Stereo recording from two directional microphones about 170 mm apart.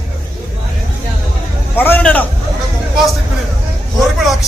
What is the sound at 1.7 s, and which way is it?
Speech, 10° left (ahead or behind).